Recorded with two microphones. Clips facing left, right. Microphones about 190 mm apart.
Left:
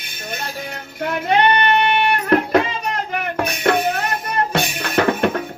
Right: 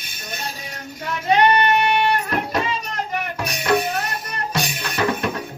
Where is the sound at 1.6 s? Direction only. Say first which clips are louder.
Left 1 dB; 60° left (ahead or behind).